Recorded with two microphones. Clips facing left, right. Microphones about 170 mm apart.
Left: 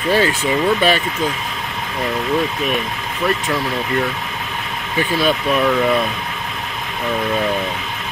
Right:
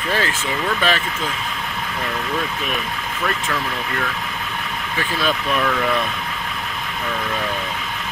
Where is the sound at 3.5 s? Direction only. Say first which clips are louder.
Left 4 dB; 20° left (ahead or behind).